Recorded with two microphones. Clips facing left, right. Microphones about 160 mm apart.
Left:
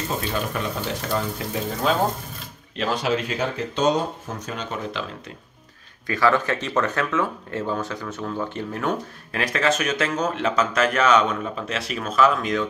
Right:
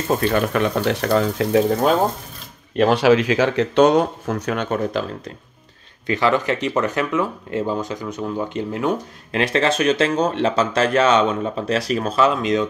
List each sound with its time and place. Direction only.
0.1 s speech: 65° right (ahead or behind); by 1.6 s 80° right
2.7 s speech: 50° right (ahead or behind)
3.0 s speech: 90° right; by 5.0 s 55° right (ahead or behind)
6.0 s speech: 20° right (ahead or behind)